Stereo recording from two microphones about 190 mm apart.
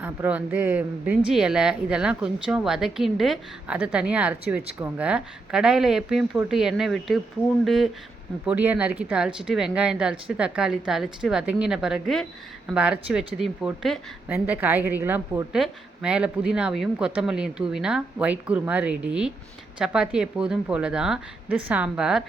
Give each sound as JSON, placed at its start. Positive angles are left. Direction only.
{"t": 0.0, "sound": "a woman's voice", "side_deg": -10}